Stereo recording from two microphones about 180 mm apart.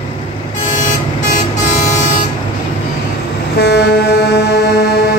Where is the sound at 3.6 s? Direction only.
65° left (ahead or behind).